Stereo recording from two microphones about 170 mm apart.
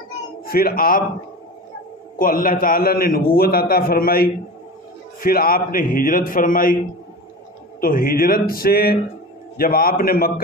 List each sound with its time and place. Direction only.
0.5 s a man's voice: 60° left (ahead or behind)
2.1 s a man's voice: 55° left (ahead or behind)
7.8 s a man's voice: 55° left (ahead or behind)